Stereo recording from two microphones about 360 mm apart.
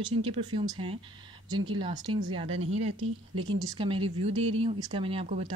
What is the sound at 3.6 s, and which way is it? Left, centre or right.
Speech, centre.